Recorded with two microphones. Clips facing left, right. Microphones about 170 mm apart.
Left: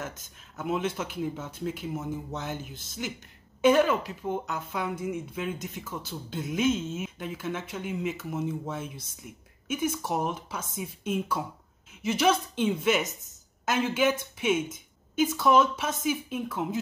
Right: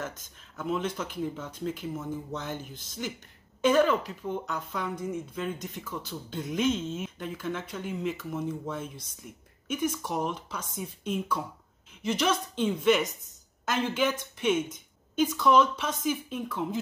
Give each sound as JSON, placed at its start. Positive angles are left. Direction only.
{"t": 0.0, "sound": "a man's voice", "side_deg": 5}
{"t": 3.6, "sound": "a man's voice", "side_deg": 5}